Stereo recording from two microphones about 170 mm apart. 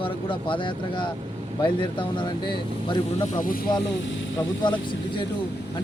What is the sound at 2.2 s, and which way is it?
Speech, 30° left (ahead or behind).